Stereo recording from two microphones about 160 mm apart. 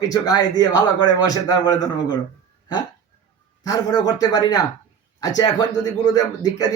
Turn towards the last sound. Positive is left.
turn(degrees=25)  # may be behind; listen again after turning